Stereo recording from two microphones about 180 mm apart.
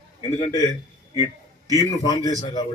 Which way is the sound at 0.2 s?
30° left (ahead or behind).